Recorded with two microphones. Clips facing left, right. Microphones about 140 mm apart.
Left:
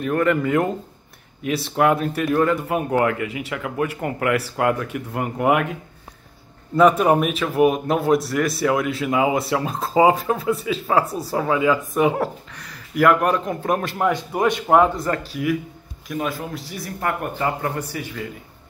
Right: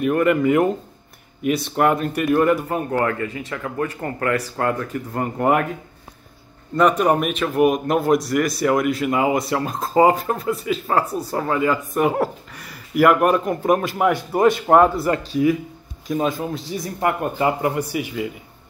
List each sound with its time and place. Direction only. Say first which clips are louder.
0.0 s a man's voice: right 2 dB; 5° right (ahead or behind)
2.7 s a man's voice: left 1 dB; 10° left (ahead or behind)
6.8 s a man's voice: left 2 dB; 5° left (ahead or behind)
16.1 s speech: right 4 dB; 25° right (ahead or behind)